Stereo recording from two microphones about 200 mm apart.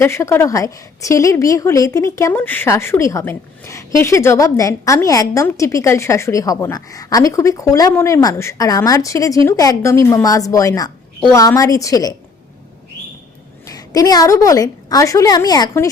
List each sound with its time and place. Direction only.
0.0 s a woman's voice: 15° left (ahead or behind)
13.7 s a woman's voice: 20° left (ahead or behind)